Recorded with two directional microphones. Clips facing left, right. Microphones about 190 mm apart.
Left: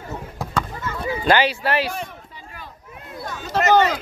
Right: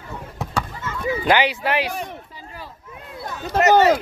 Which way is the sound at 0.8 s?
15° right (ahead or behind).